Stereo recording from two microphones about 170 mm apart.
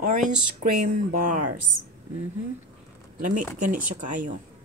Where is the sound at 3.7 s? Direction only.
50° right (ahead or behind).